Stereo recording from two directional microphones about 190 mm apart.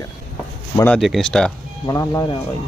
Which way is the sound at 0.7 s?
10° left (ahead or behind).